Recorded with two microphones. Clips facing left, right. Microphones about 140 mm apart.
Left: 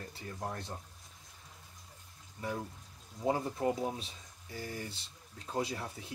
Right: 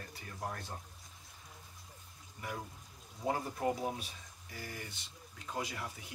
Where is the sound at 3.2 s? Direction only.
25° left (ahead or behind).